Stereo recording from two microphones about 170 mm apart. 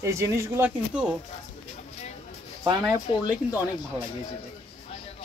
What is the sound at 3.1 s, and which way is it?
Speech, 30° left (ahead or behind).